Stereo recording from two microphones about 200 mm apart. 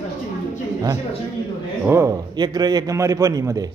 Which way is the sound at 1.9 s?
15° right (ahead or behind).